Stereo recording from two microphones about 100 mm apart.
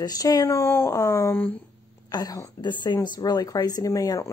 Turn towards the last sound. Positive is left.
turn(degrees=35)  # may be behind; listen again after turning